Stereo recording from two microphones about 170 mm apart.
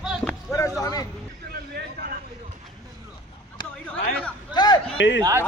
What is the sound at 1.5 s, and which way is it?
Vehicle, 65° right (ahead or behind).